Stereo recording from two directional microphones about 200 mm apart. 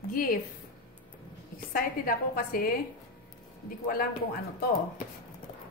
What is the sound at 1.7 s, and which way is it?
Speech, 45° left (ahead or behind).